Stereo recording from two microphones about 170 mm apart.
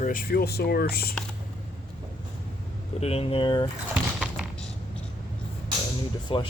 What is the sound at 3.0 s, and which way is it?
Speech, 35° left (ahead or behind).